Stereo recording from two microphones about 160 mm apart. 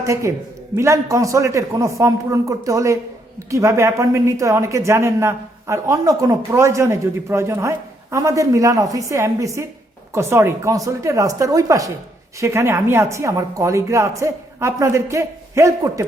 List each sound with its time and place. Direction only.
0.0 s speech: 20° right (ahead or behind)